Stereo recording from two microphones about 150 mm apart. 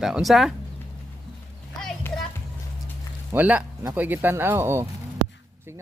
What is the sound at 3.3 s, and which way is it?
Speech, 10° right (ahead or behind).